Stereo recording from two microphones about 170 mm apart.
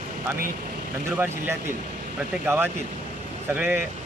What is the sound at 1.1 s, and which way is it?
Speech, 15° right (ahead or behind).